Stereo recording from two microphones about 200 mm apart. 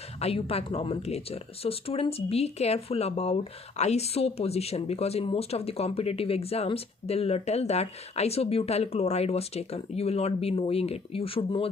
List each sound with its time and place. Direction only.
0.2 s speech: 30° left (ahead or behind)